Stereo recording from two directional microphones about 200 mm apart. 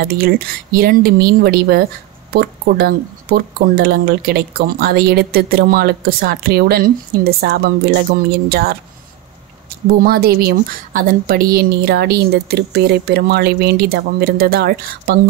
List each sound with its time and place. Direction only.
0.0 s speech: 50° right (ahead or behind)